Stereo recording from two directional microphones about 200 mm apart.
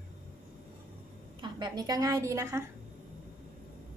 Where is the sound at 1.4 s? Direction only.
20° right (ahead or behind).